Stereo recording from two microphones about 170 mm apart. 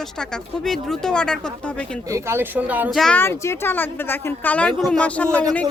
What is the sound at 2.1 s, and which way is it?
Speech, 15° right (ahead or behind).